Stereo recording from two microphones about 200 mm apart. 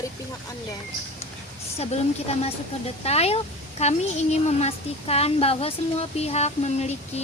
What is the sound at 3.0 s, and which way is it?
A woman's voice, 30° left (ahead or behind).